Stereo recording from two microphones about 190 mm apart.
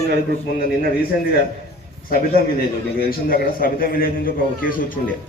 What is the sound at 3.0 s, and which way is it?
A man's voice, 50° left (ahead or behind).